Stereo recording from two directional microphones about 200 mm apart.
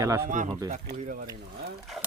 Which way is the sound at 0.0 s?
15° right (ahead or behind).